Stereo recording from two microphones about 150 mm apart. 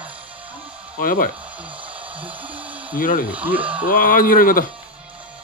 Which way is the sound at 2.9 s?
65° left (ahead or behind).